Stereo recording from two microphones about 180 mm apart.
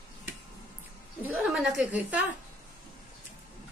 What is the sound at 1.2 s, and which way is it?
A woman's voice, 5° right (ahead or behind).